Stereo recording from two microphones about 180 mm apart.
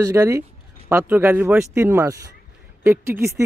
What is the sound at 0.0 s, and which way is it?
Speech, 15° right (ahead or behind).